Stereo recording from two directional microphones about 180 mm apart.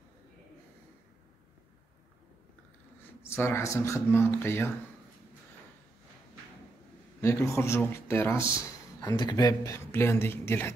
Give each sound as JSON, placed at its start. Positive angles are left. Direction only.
{"t": 3.2, "sound": "speech", "side_deg": 15}
{"t": 7.2, "sound": "speech", "side_deg": 15}